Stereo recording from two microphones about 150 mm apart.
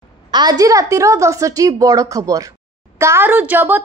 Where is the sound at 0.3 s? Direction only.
25° right (ahead or behind).